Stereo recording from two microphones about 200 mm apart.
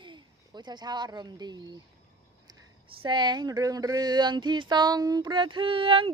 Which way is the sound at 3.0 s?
25° right (ahead or behind).